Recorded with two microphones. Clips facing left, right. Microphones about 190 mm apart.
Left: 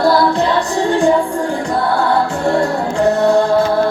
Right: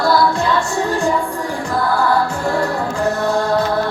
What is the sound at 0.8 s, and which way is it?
Music, 30° left (ahead or behind).